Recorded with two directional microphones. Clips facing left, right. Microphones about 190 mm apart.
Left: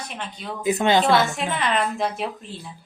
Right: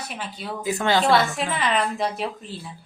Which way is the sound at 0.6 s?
20° left (ahead or behind).